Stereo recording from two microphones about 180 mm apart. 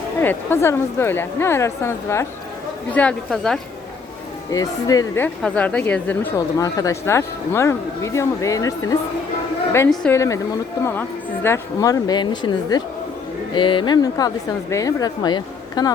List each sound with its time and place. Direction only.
0.2 s speech: 10° left (ahead or behind)
4.5 s speech: 20° left (ahead or behind)
6.3 s speech: 20° left (ahead or behind)
9.9 s speech: 5° left (ahead or behind)
10.2 s speech: 20° left (ahead or behind)
11.4 s a woman's voice: 15° left (ahead or behind)